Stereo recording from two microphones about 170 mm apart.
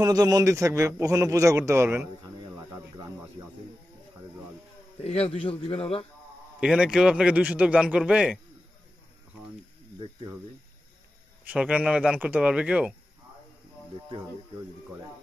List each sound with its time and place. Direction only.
0.0 s a man's voice: 20° right (ahead or behind)
2.5 s a sound: 15° right (ahead or behind)
5.0 s a man's voice: 35° left (ahead or behind)
6.6 s a man's voice: 5° right (ahead or behind)
11.4 s speech: 10° right (ahead or behind)